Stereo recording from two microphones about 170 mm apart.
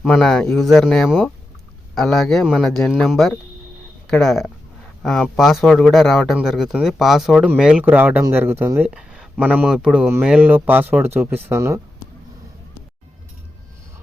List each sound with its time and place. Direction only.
0.0 s speech: 5° left (ahead or behind); by 11.8 s 15° right (ahead or behind)